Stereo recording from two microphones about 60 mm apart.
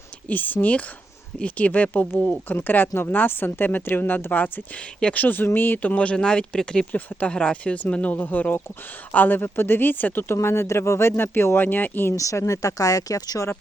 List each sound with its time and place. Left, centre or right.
0.3 s speech: left
4.8 s speech: centre
5.2 s speech: left; by 6.8 s centre
6.9 s speech: left
10.3 s speech: left
12.1 s speech: left